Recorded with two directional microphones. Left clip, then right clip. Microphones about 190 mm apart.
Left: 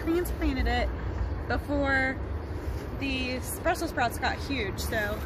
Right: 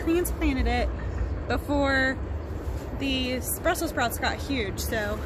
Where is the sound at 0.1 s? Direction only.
50° right (ahead or behind).